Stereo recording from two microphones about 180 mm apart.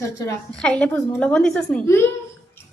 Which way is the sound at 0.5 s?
5° left (ahead or behind).